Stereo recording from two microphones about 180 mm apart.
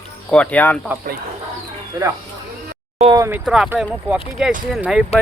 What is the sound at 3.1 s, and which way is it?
Speech, 15° right (ahead or behind).